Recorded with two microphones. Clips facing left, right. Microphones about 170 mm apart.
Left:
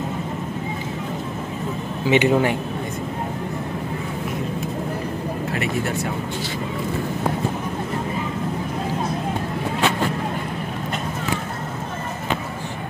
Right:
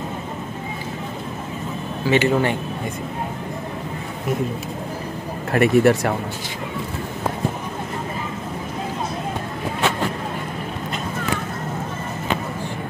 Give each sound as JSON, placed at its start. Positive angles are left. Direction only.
{"t": 2.0, "sound": "speech", "side_deg": 15}
{"t": 5.5, "sound": "speech", "side_deg": -60}